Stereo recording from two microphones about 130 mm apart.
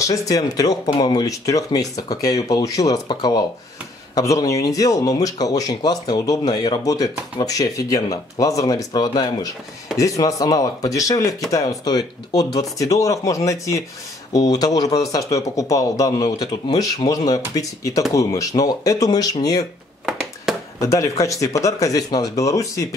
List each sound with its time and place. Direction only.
0.0 s speech: 25° left (ahead or behind)
20.5 s a sound: 5° right (ahead or behind)
20.8 s speech: 25° left (ahead or behind)